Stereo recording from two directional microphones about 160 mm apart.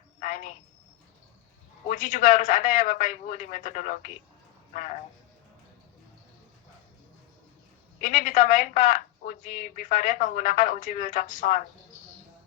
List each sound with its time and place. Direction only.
0.2 s a sound: 55° left (ahead or behind)
1.9 s a man's voice: 55° left (ahead or behind)
8.0 s a woman's voice: 55° left (ahead or behind)